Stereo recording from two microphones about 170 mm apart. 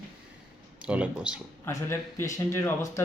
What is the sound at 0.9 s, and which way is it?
Speech, 5° right (ahead or behind).